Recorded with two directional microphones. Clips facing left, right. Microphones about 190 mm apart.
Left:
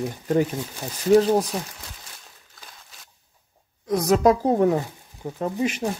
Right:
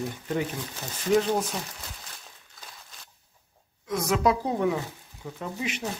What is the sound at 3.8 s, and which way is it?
Speech, 35° left (ahead or behind).